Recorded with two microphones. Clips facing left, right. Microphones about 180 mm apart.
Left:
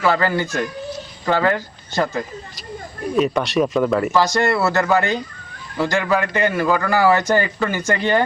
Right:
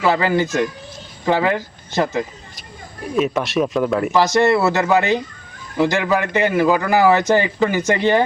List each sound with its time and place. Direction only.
0.0 s a man's voice: 15° right (ahead or behind)
3.2 s speech: centre (ahead or behind)
4.1 s a man's voice: 15° right (ahead or behind)